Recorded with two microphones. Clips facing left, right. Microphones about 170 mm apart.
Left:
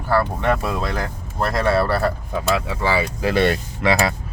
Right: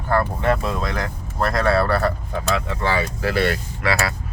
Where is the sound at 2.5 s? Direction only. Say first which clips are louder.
Left 1 dB; 5° left (ahead or behind).